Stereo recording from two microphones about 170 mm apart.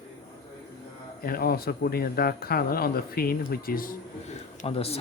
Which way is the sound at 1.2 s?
60° left (ahead or behind).